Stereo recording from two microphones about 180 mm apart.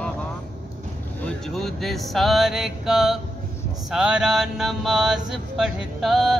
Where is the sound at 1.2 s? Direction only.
Centre (ahead or behind).